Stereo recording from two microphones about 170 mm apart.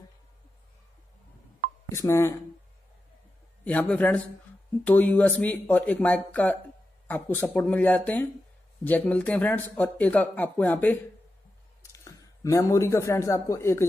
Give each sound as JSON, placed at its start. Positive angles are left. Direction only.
{"t": 1.9, "sound": "a man's voice", "side_deg": 15}
{"t": 3.6, "sound": "a man's voice", "side_deg": 10}